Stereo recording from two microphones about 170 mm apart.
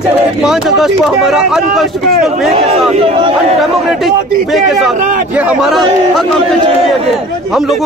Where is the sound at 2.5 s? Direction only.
35° right (ahead or behind).